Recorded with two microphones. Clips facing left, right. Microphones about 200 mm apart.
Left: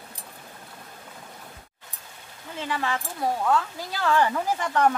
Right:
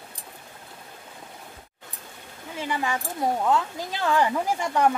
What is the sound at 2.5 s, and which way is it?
Speech, 10° right (ahead or behind).